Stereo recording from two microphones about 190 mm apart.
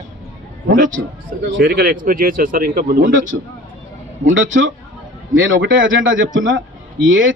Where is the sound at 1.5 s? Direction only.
50° right (ahead or behind).